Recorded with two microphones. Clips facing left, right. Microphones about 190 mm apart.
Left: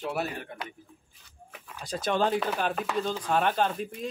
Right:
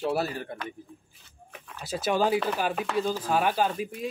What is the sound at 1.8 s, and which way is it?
Speech, 5° right (ahead or behind).